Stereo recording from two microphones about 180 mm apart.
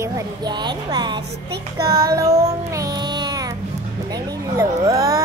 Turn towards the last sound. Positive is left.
turn(degrees=-20)  # may be behind; listen again after turning